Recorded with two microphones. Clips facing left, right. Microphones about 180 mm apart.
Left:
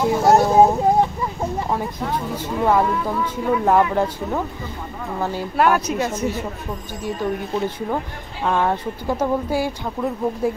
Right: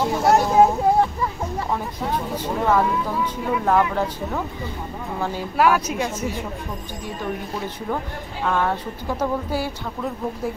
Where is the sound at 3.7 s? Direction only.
10° left (ahead or behind).